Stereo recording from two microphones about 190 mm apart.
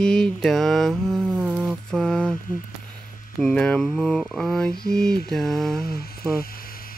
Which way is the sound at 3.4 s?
5° left (ahead or behind).